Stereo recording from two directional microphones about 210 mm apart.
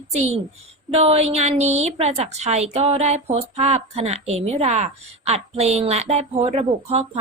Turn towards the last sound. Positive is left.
turn(degrees=-30)  # may be behind; listen again after turning